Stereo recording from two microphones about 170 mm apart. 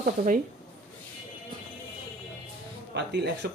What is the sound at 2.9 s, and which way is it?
Speech, 85° right.